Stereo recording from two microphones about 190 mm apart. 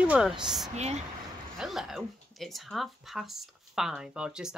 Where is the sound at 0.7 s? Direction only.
35° right (ahead or behind).